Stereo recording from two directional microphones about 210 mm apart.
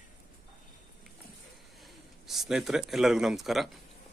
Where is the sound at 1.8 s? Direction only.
Centre (ahead or behind).